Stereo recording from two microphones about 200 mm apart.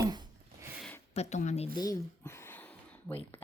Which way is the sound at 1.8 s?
15° left (ahead or behind).